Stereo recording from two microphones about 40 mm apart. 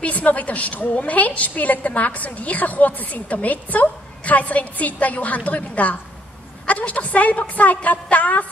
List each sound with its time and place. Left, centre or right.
0.0 s a woman's voice: left